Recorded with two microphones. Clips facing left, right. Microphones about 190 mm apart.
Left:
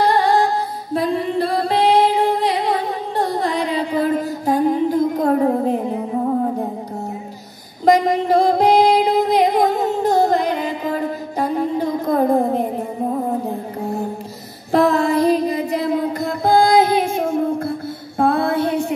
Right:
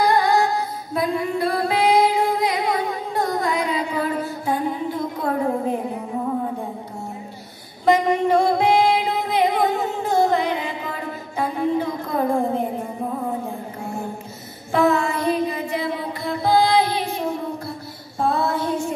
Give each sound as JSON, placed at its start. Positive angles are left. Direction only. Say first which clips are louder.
{"t": 0.0, "sound": "music", "louder": "left 2 dB", "side_deg": 30}
{"t": 0.9, "sound": "singing", "louder": "left 3 dB", "side_deg": 30}
{"t": 7.8, "sound": "music", "louder": "left 3 dB", "side_deg": 35}
{"t": 14.7, "sound": "a sound", "louder": "left 4 dB", "side_deg": 35}